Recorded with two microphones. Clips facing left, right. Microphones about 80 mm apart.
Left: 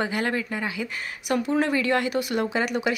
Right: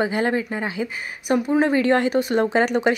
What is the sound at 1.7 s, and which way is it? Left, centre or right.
Speech, right.